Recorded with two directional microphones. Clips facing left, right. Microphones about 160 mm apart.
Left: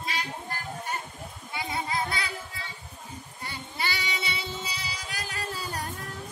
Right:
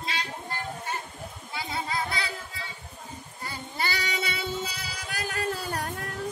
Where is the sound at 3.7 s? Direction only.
45° right (ahead or behind).